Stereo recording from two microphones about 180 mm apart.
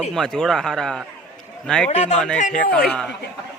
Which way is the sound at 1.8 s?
40° left (ahead or behind).